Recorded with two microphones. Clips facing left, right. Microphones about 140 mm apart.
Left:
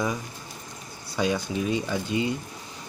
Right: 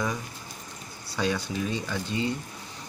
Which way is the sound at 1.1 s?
15° left (ahead or behind).